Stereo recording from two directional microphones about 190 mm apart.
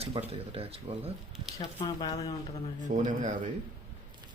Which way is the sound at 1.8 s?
20° left (ahead or behind).